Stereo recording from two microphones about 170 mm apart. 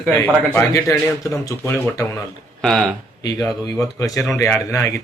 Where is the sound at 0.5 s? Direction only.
20° left (ahead or behind).